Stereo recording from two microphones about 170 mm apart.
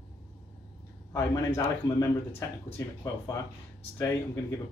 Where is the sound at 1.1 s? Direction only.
20° left (ahead or behind).